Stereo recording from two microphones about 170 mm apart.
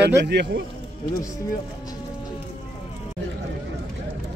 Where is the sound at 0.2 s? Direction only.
80° right.